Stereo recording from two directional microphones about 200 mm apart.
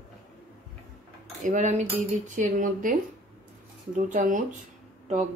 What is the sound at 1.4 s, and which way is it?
Speech, 35° right (ahead or behind).